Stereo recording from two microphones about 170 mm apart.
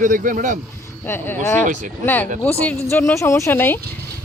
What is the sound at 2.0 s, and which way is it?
Speech, 10° left (ahead or behind).